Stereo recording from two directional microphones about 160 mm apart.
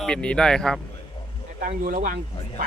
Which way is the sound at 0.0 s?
5° left (ahead or behind).